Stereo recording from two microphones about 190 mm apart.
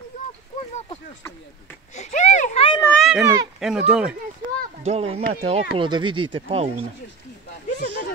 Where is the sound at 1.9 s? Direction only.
40° left (ahead or behind).